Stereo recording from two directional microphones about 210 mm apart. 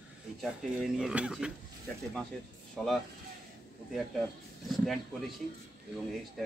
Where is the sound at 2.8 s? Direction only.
Centre (ahead or behind).